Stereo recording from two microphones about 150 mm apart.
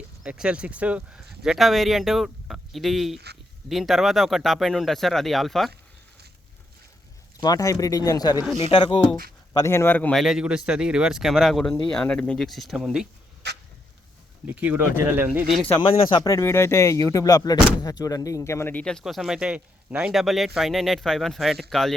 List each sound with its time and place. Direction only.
0.2 s speech: 5° right (ahead or behind)
7.4 s speech: 25° left (ahead or behind)
9.5 s speech: 20° left (ahead or behind); by 13.1 s 5° right (ahead or behind)
14.4 s speech: 10° right (ahead or behind)
15.8 s speech: 30° left (ahead or behind)
16.3 s speech: 15° left (ahead or behind)